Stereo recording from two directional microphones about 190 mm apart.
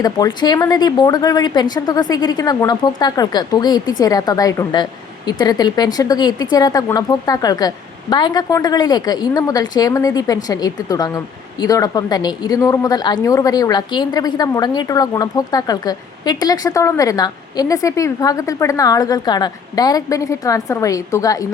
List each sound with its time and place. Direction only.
0.0 s a woman's voice: 20° left (ahead or behind)